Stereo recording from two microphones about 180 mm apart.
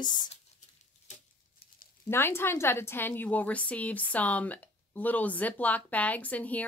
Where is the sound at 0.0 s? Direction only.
25° left (ahead or behind).